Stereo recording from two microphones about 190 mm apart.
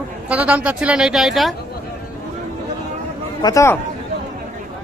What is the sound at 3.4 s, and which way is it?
Speech, 15° left (ahead or behind).